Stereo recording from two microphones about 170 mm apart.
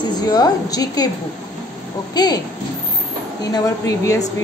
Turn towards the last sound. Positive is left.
turn(degrees=20)  # may be behind; listen again after turning